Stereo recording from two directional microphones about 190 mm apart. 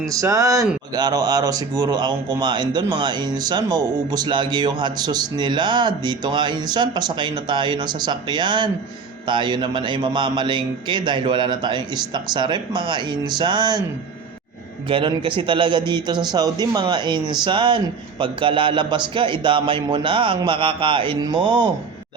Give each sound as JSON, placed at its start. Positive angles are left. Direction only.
{"t": 0.1, "sound": "speech", "side_deg": -15}
{"t": 14.8, "sound": "speech", "side_deg": -25}